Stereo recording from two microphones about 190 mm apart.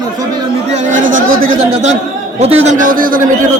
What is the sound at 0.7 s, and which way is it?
Chatter, 40° right (ahead or behind).